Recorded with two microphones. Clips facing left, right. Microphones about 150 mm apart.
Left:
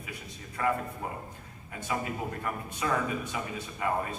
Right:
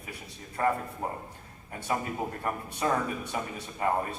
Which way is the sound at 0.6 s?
35° right (ahead or behind).